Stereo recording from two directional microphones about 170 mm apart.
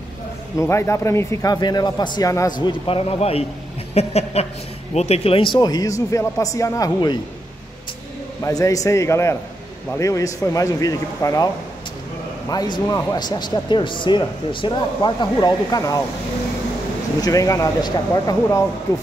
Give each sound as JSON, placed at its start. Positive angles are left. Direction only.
{"t": 0.6, "sound": "speech", "side_deg": 15}
{"t": 2.6, "sound": "speech", "side_deg": 30}
{"t": 8.5, "sound": "a man's voice", "side_deg": 20}
{"t": 12.4, "sound": "speech", "side_deg": 25}
{"t": 17.2, "sound": "speech", "side_deg": 20}